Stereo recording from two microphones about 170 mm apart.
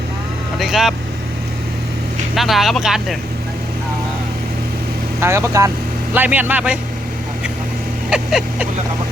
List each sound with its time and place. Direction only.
0.6 s speech: centre (ahead or behind)
2.3 s speech: centre (ahead or behind)
5.2 s a man's voice: 15° right (ahead or behind)
8.1 s speech: 5° right (ahead or behind)